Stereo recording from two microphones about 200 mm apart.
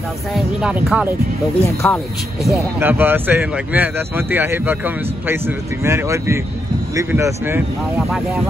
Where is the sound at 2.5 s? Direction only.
10° right (ahead or behind).